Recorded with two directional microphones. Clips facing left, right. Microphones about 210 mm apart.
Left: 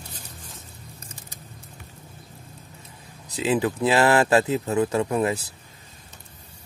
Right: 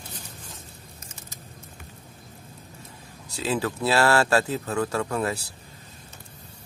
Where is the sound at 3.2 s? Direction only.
20° left (ahead or behind).